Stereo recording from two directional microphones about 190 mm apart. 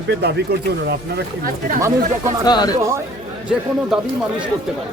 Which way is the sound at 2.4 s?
20° left (ahead or behind).